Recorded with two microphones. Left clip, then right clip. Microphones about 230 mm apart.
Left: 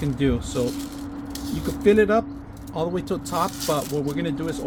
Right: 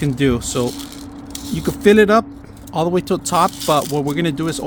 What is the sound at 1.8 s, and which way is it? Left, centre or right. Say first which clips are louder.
Speech: right 6 dB; right.